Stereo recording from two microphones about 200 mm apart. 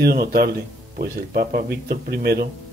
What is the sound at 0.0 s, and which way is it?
Speech, 50° right (ahead or behind).